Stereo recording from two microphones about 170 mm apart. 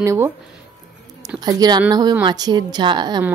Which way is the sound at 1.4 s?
25° right (ahead or behind).